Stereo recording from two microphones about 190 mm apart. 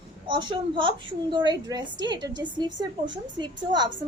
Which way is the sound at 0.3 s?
25° right (ahead or behind).